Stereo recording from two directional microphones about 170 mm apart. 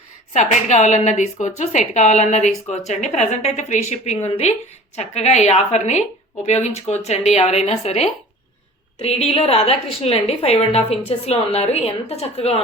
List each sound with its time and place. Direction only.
0.3 s a woman's voice: 45° left (ahead or behind)